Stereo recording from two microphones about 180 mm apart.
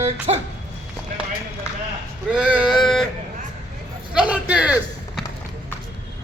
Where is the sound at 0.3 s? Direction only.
35° right (ahead or behind).